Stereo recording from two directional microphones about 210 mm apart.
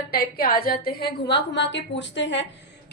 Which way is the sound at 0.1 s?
45° left (ahead or behind).